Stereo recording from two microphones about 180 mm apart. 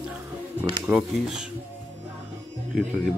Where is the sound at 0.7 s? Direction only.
15° right (ahead or behind).